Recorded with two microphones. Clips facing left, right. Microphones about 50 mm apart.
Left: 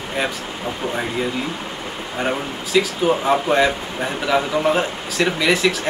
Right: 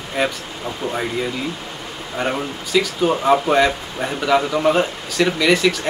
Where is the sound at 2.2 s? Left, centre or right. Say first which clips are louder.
Right 1 dB; centre.